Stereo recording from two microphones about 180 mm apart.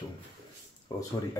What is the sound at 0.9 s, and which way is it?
Speech, 20° left (ahead or behind).